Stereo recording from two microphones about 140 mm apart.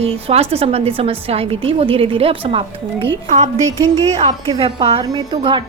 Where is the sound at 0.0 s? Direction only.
45° right (ahead or behind).